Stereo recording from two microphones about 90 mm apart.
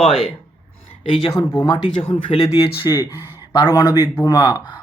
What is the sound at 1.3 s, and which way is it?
Speech, 55° left (ahead or behind).